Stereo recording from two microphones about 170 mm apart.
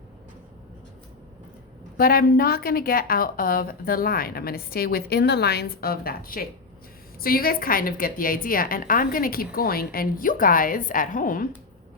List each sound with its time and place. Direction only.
2.0 s a woman's voice: 60° left (ahead or behind)